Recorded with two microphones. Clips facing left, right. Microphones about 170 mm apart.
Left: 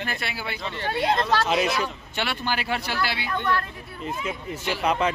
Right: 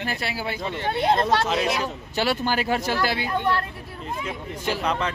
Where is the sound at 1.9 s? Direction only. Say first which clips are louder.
Right 6 dB; 40° right (ahead or behind).